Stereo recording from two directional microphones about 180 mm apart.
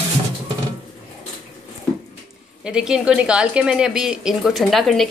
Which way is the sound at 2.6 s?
5° right (ahead or behind).